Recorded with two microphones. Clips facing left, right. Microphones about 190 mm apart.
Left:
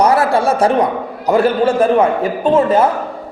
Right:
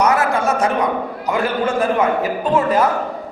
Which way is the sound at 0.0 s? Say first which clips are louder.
Left 4 dB; 30° left (ahead or behind).